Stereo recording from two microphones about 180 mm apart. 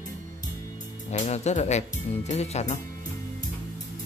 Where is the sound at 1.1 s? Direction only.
40° left (ahead or behind).